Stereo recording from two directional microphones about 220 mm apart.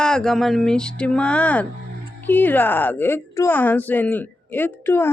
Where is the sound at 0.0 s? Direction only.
5° left (ahead or behind).